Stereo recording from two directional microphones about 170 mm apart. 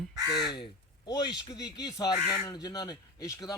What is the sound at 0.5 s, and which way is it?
Speech, 25° left (ahead or behind).